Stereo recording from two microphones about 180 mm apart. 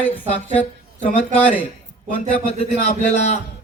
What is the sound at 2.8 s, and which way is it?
Speech, 40° left (ahead or behind).